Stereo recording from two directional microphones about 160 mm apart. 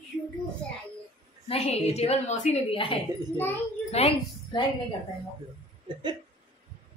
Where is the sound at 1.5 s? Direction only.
40° left (ahead or behind).